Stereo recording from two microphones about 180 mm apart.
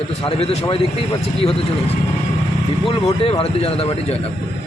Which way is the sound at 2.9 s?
30° left (ahead or behind).